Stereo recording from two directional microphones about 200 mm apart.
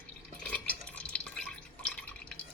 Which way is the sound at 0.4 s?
5° left (ahead or behind).